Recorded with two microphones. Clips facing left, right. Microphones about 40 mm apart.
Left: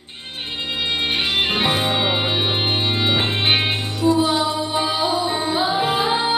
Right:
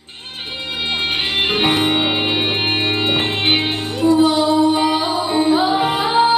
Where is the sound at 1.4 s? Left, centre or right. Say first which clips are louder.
Right 6 dB; right.